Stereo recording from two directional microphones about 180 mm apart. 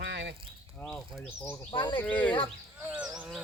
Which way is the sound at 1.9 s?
10° left (ahead or behind).